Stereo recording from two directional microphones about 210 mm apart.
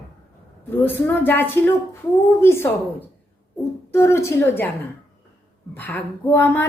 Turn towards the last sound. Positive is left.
turn(degrees=10)  # may be behind; listen again after turning